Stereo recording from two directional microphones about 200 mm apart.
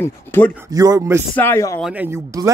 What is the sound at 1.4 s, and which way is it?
Speech, 10° left (ahead or behind).